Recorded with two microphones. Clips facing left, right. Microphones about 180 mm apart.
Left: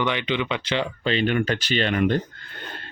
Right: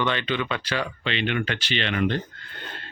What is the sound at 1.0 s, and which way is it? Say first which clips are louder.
Speech: left 4 dB; 40° left (ahead or behind).